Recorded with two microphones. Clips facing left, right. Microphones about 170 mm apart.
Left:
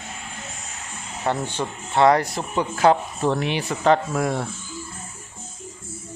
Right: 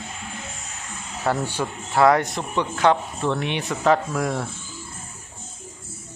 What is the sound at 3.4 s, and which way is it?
Speech, centre (ahead or behind).